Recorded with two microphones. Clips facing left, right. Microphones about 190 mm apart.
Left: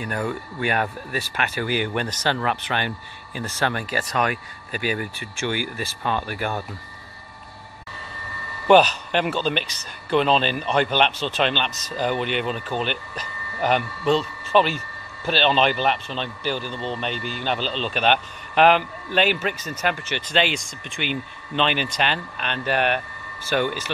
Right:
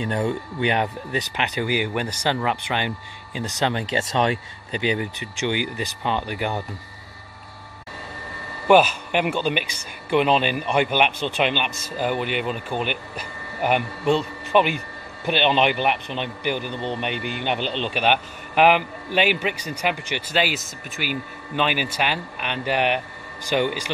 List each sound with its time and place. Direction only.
0.0 s a man's voice: 25° right (ahead or behind)
8.6 s a man's voice: 10° right (ahead or behind)